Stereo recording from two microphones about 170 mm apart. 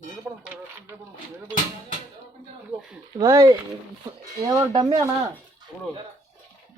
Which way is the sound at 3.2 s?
20° right (ahead or behind).